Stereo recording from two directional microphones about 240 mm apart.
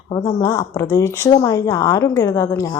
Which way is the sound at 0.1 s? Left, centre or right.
Centre.